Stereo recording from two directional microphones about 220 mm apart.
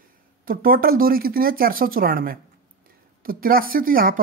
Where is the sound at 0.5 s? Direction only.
40° right (ahead or behind).